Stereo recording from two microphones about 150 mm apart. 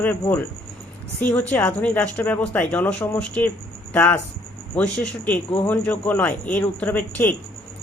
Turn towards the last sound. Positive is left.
turn(degrees=10)  # may be behind; listen again after turning